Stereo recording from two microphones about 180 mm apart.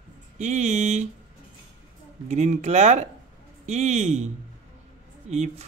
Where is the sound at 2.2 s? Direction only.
40° right (ahead or behind).